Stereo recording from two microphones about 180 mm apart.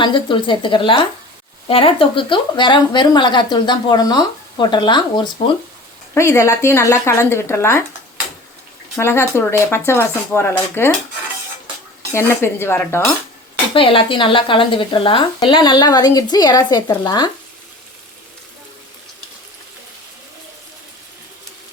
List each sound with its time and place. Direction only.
0.0 s speech: 25° left (ahead or behind)
9.0 s speech: 15° left (ahead or behind)
12.1 s speech: 15° left (ahead or behind)
13.7 s speech: 30° left (ahead or behind)